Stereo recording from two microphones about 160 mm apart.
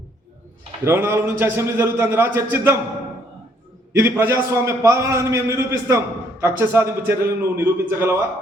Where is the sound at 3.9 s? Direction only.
15° right (ahead or behind).